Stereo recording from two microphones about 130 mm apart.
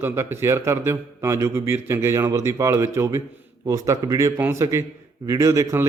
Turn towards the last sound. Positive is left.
turn(degrees=-20)  # may be behind; listen again after turning